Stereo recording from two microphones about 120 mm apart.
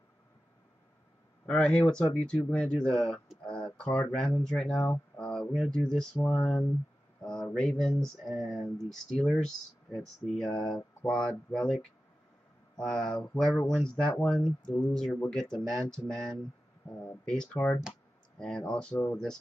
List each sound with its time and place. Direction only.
1.5 s speech: 5° left (ahead or behind)